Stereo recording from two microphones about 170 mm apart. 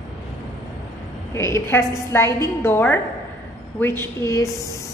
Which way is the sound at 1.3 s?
15° left (ahead or behind).